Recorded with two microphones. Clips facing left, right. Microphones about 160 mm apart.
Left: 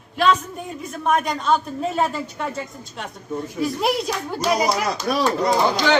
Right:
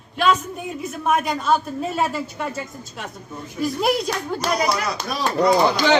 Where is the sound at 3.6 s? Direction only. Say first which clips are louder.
Right 2 dB; centre (ahead or behind).